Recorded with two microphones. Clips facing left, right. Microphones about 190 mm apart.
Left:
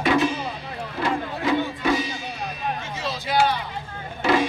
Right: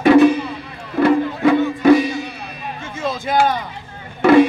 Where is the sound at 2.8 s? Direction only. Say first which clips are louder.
Right 6 dB; 50° right (ahead or behind).